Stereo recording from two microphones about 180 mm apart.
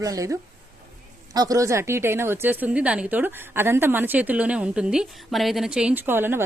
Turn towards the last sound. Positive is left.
turn(degrees=-10)  # may be behind; listen again after turning